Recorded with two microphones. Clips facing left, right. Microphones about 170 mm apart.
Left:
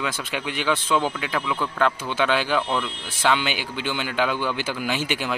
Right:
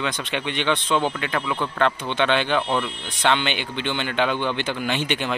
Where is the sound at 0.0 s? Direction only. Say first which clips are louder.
Right 2 dB; 5° left (ahead or behind).